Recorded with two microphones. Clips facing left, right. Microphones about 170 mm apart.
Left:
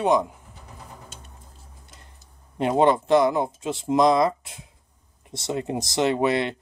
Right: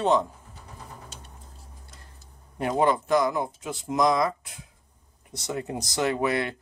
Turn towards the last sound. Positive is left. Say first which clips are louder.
# left 4 dB
turn(degrees=25)  # may be behind; listen again after turning